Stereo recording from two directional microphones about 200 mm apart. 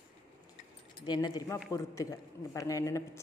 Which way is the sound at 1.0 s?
20° left (ahead or behind).